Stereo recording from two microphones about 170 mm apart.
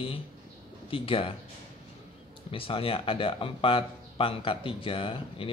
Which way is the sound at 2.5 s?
30° left (ahead or behind).